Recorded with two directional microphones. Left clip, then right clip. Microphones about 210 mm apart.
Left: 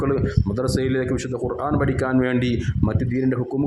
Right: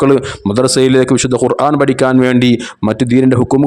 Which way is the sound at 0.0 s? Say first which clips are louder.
Right 12 dB; 40° right (ahead or behind).